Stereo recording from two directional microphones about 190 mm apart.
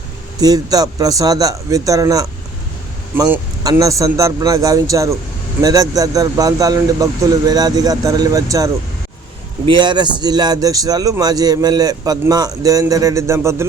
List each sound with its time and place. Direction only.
0.3 s a man's voice: 20° right (ahead or behind)
3.2 s a man's voice: 15° right (ahead or behind)